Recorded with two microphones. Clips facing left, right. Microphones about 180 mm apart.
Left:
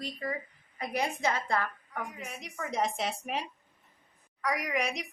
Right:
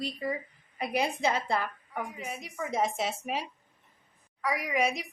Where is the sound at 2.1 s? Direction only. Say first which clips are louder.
Right 3 dB; 5° right (ahead or behind).